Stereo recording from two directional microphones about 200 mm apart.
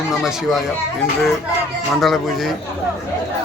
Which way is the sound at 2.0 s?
Centre (ahead or behind).